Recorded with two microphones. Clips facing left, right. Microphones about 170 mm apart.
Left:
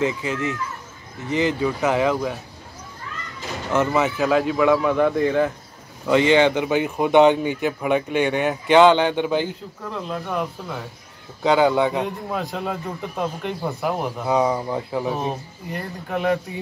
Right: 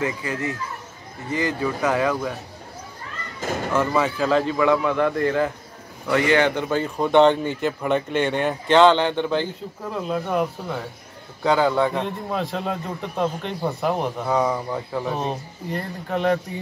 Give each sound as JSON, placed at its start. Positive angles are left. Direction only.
{"t": 0.0, "sound": "speech", "side_deg": 20}
{"t": 3.7, "sound": "speech", "side_deg": 20}
{"t": 6.0, "sound": "speech", "side_deg": 20}
{"t": 9.8, "sound": "speech", "side_deg": -5}
{"t": 11.4, "sound": "speech", "side_deg": 15}
{"t": 12.0, "sound": "speech", "side_deg": 0}